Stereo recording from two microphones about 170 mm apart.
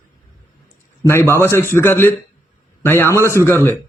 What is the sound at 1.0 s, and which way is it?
A man's voice, 15° left (ahead or behind).